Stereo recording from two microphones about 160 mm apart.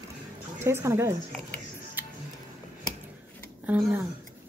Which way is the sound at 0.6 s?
15° right (ahead or behind).